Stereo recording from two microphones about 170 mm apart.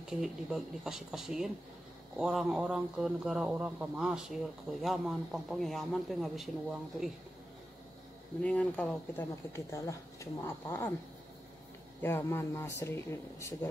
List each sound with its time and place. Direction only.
0.2 s speech: 5° right (ahead or behind)
8.4 s speech: 5° left (ahead or behind)
12.0 s speech: 15° left (ahead or behind)